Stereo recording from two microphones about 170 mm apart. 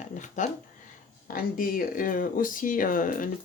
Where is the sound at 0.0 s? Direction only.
45° left (ahead or behind).